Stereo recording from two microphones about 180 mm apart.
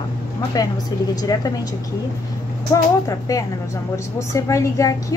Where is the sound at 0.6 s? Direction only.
20° left (ahead or behind).